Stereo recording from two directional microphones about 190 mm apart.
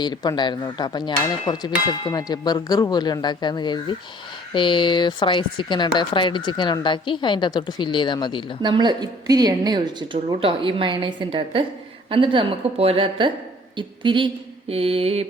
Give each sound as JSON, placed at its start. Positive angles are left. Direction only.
{"t": 0.0, "sound": "speech", "side_deg": 20}
{"t": 8.6, "sound": "a woman's voice", "side_deg": -25}
{"t": 14.7, "sound": "mantra", "side_deg": -30}